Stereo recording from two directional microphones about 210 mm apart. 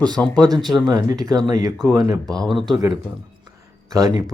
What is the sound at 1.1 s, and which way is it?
Speech, 15° right (ahead or behind).